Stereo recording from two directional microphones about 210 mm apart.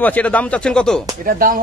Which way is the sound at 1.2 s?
40° right (ahead or behind).